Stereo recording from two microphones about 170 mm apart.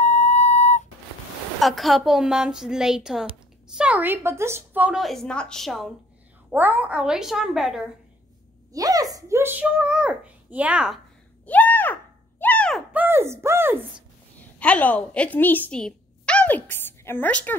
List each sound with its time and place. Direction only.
0.0 s flute: 45° left (ahead or behind)
1.6 s a woman's voice: centre (ahead or behind)
8.7 s a woman's voice: 20° right (ahead or behind); by 11.0 s 5° right (ahead or behind)
11.4 s a sound: 10° left (ahead or behind)
12.9 s speech: 10° right (ahead or behind)
14.6 s speech: 10° left (ahead or behind)